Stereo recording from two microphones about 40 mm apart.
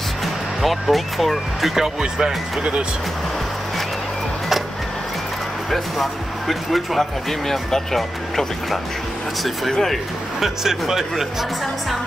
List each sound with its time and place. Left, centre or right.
0.2 s speech: centre
1.8 s speech: centre
5.7 s speech: centre
10.4 s speech: centre